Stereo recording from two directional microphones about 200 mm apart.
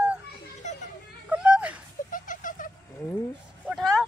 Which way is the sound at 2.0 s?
40° left (ahead or behind).